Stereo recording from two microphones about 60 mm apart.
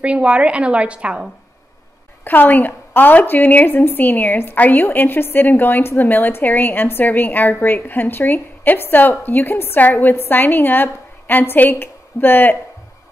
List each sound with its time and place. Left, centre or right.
0.0 s a woman's voice: centre
2.2 s a woman's voice: left